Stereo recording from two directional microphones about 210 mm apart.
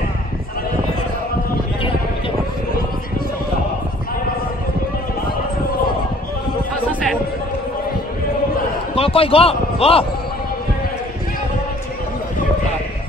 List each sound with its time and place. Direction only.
8.9 s a man's voice: 25° left (ahead or behind)